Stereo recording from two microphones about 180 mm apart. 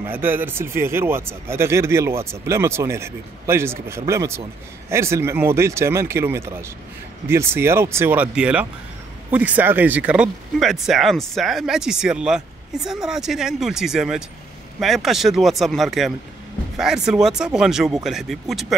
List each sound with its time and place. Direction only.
0.0 s speech: 10° right (ahead or behind)